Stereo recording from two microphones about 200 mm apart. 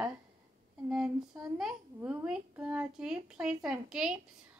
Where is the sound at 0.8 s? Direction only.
5° right (ahead or behind).